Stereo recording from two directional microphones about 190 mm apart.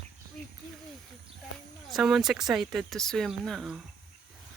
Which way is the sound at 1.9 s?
Centre (ahead or behind).